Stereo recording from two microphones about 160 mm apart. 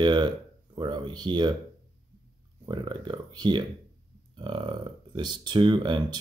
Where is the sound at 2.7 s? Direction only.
30° right (ahead or behind).